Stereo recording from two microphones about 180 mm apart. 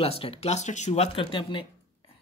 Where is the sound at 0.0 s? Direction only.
35° left (ahead or behind).